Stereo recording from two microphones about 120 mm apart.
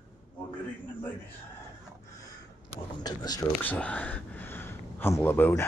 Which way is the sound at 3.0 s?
35° left (ahead or behind).